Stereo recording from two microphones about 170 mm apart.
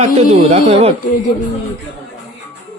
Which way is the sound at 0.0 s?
40° right (ahead or behind).